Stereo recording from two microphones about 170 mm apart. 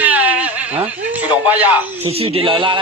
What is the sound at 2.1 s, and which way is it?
Speech, 35° right (ahead or behind).